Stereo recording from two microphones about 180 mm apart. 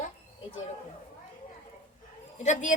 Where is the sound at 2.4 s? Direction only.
45° left (ahead or behind).